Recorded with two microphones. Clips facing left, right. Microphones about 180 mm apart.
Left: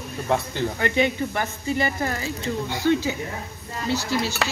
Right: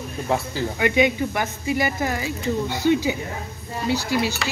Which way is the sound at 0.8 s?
10° right (ahead or behind).